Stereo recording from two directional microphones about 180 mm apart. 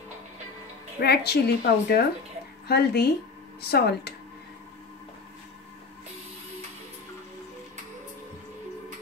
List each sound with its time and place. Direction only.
0.9 s a woman's voice: 60° left (ahead or behind)